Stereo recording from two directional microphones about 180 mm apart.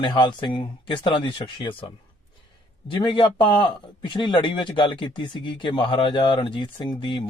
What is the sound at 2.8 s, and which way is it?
A man's voice, 25° left (ahead or behind).